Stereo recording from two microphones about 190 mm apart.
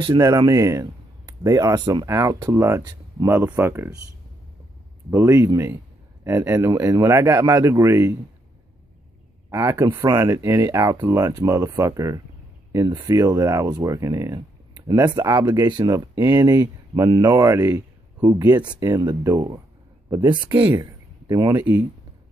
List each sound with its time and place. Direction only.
0.0 s speech: 20° right (ahead or behind)
5.1 s speech: 15° right (ahead or behind)
9.5 s speech: 15° right (ahead or behind)
20.5 s speech: 10° right (ahead or behind)